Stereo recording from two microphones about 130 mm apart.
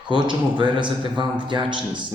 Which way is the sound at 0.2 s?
35° right (ahead or behind).